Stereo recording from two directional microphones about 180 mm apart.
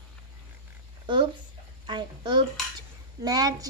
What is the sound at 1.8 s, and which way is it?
A child's voice, 25° right (ahead or behind).